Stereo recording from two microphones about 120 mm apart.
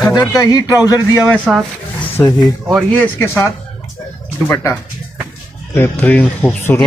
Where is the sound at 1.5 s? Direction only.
Centre (ahead or behind).